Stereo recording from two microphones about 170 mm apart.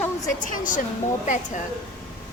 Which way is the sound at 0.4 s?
50° left (ahead or behind).